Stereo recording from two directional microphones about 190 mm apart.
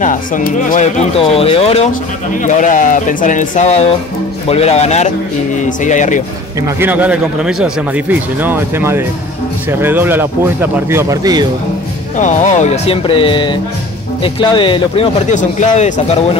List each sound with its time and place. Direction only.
0.0 s speech: 45° left (ahead or behind)
6.6 s speech: 10° right (ahead or behind)
12.2 s speech: 40° left (ahead or behind)
15.3 s speech: 40° left (ahead or behind)